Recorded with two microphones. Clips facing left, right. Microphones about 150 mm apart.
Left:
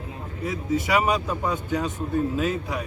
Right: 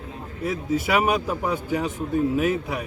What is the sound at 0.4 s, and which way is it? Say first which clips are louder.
Speech: right 1 dB; 10° right (ahead or behind).